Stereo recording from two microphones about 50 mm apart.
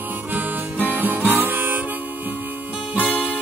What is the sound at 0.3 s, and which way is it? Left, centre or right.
Music, right.